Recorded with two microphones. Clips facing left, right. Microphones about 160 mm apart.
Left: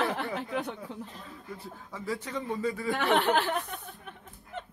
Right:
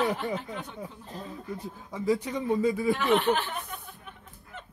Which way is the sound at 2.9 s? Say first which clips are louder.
Left 2 dB; 70° left (ahead or behind).